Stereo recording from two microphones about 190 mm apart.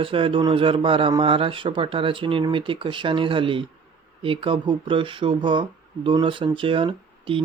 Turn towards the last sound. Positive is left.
turn(degrees=-25)  # may be behind; listen again after turning